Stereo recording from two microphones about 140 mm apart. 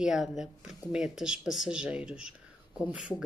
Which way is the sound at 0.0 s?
Centre (ahead or behind).